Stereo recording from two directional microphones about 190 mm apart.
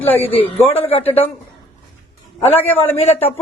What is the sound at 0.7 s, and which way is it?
Speech, 30° left (ahead or behind).